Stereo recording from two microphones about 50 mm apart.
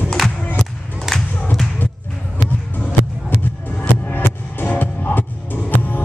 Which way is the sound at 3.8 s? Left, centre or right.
Left.